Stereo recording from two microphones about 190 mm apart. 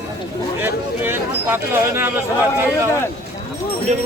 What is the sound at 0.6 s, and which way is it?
Speech, 10° right (ahead or behind).